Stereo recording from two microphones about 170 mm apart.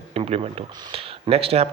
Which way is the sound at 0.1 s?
35° right (ahead or behind).